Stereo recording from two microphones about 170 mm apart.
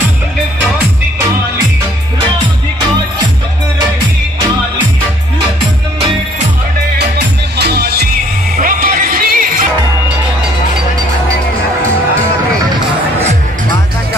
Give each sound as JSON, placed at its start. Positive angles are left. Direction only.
{"t": 7.0, "sound": "music", "side_deg": -75}
{"t": 8.5, "sound": "music", "side_deg": -55}